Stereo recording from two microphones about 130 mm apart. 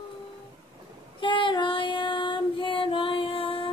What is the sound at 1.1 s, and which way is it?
Female singing, 40° left (ahead or behind).